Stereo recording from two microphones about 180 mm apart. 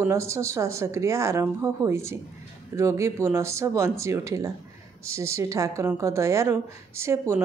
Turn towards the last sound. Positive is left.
turn(degrees=-15)  # may be behind; listen again after turning